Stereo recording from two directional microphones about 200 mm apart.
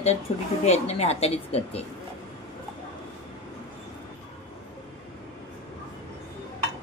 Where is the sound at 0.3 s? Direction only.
30° left (ahead or behind).